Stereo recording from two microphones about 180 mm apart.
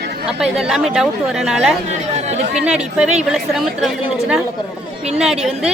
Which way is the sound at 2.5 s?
5° right (ahead or behind).